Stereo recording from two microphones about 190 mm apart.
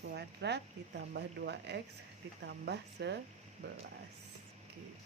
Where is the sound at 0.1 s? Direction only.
60° right (ahead or behind).